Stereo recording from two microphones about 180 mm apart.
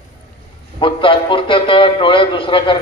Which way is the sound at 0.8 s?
30° left (ahead or behind).